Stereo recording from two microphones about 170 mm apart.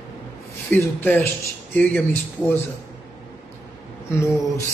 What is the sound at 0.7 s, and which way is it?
A man's voice, 10° left (ahead or behind).